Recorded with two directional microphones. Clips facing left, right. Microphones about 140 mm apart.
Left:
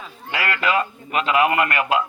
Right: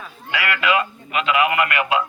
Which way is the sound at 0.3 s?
40° left (ahead or behind).